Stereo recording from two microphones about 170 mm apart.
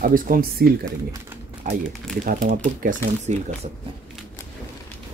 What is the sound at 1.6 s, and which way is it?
Speech, 50° right (ahead or behind).